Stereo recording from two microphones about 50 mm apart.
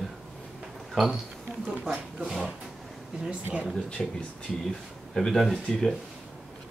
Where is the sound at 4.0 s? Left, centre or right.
Centre.